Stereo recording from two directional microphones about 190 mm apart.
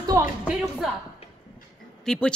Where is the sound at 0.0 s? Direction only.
20° right (ahead or behind).